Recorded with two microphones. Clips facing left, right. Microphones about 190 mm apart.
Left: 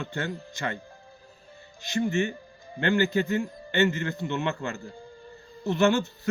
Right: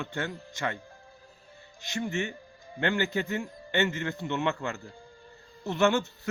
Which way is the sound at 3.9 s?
20° right (ahead or behind).